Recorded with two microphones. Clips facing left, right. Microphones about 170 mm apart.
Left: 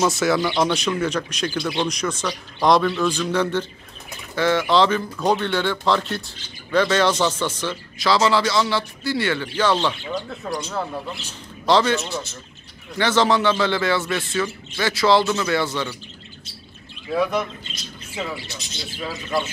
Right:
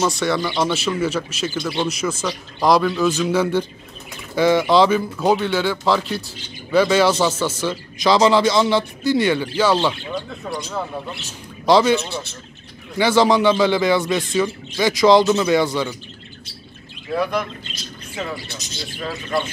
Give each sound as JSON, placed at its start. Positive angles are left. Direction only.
{"t": 0.0, "sound": "speech", "side_deg": 0}
{"t": 8.0, "sound": "speech", "side_deg": -20}
{"t": 11.6, "sound": "speech", "side_deg": -15}
{"t": 17.1, "sound": "speech", "side_deg": 5}
{"t": 18.9, "sound": "speech", "side_deg": 5}